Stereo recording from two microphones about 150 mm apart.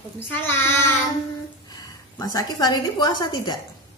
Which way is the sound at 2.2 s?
25° left (ahead or behind).